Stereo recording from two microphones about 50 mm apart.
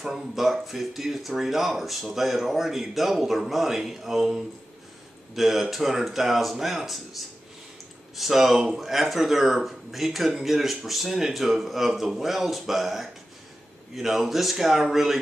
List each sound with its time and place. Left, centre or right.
0.0 s speech: centre
8.2 s speech: centre